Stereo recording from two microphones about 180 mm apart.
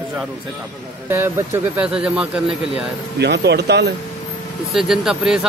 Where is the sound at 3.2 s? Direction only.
70° right (ahead or behind).